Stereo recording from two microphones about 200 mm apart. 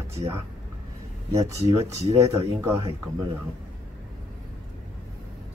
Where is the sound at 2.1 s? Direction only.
15° right (ahead or behind).